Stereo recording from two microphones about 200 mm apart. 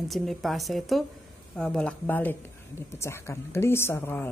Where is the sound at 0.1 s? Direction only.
Centre (ahead or behind).